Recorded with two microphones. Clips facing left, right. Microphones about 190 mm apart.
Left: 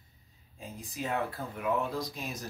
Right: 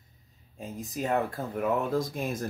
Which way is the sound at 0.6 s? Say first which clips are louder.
Right 5 dB; 45° right (ahead or behind).